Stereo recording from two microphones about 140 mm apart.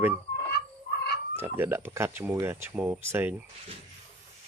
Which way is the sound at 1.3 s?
15° right (ahead or behind).